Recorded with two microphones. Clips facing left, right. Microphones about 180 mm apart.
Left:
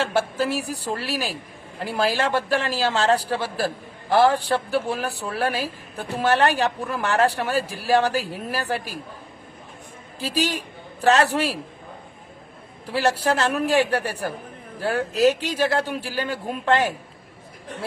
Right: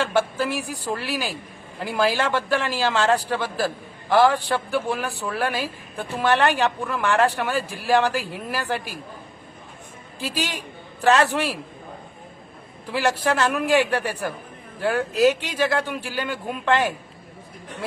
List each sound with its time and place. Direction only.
0.0 s speech: 35° left (ahead or behind)
10.2 s speech: 35° left (ahead or behind)
12.9 s speech: 35° left (ahead or behind)